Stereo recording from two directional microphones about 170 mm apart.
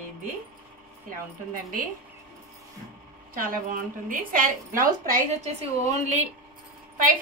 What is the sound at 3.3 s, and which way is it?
A woman's voice, 55° right (ahead or behind).